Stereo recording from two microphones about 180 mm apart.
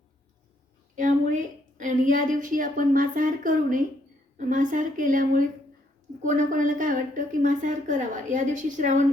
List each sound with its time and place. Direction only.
0.9 s a woman's voice: 45° right (ahead or behind)